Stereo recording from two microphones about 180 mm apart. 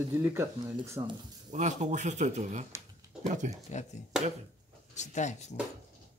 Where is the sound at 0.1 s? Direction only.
15° right (ahead or behind).